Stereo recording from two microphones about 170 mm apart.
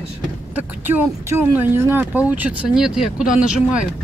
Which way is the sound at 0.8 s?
10° right (ahead or behind).